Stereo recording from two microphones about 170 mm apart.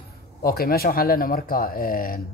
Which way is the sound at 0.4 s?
60° left (ahead or behind).